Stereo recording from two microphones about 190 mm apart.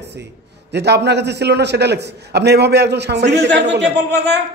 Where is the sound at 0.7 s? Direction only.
60° right (ahead or behind).